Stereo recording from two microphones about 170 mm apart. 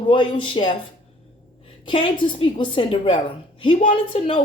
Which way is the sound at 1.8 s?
30° left (ahead or behind).